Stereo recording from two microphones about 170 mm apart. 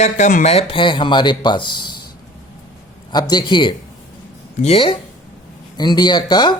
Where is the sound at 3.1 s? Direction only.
25° left (ahead or behind).